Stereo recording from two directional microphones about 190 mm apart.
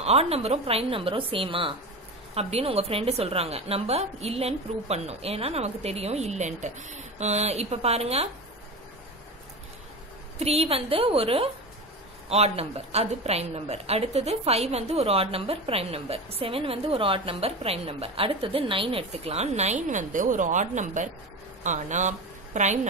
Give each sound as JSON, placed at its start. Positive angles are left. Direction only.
{"t": 0.0, "sound": "a woman's voice", "side_deg": -30}
{"t": 10.4, "sound": "a woman's voice", "side_deg": -30}